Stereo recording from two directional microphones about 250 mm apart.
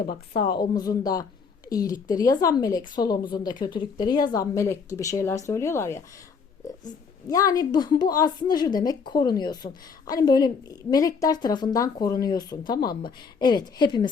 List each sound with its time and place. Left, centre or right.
0.0 s a woman's voice: left
0.6 s speech: centre